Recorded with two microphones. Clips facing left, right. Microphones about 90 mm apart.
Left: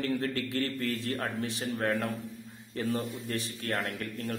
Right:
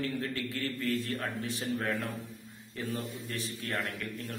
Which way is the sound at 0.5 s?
60° left (ahead or behind).